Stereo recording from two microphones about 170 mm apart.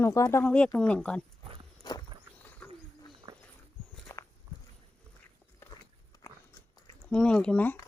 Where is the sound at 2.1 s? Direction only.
25° right (ahead or behind).